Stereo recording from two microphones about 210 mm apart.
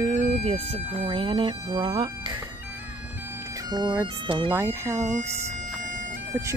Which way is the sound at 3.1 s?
10° right (ahead or behind).